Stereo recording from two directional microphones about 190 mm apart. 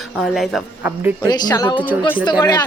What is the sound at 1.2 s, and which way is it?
A man's voice, 20° left (ahead or behind).